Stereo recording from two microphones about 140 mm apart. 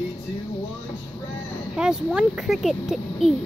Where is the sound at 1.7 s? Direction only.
5° right (ahead or behind).